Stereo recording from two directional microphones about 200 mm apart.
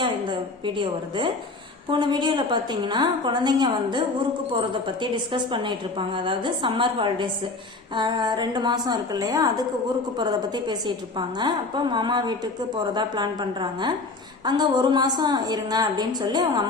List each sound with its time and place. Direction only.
0.0 s a woman's voice: 25° right (ahead or behind)